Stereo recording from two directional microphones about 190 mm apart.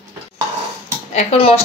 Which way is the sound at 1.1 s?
30° left (ahead or behind).